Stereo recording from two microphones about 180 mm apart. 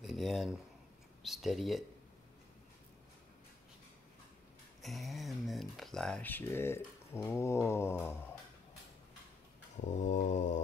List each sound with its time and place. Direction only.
0.0 s a sound: centre (ahead or behind)
1.2 s speech: centre (ahead or behind)
4.8 s speech: centre (ahead or behind)
9.8 s mantra: 45° left (ahead or behind)